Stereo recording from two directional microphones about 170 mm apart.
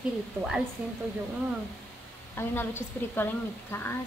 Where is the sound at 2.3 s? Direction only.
15° left (ahead or behind).